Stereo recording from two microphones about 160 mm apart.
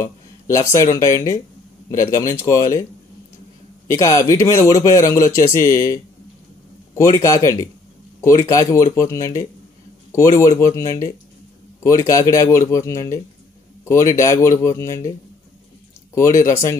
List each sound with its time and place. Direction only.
0.0 s a man's voice: 20° left (ahead or behind)
7.0 s a man's voice: 20° left (ahead or behind)
16.2 s speech: 20° left (ahead or behind)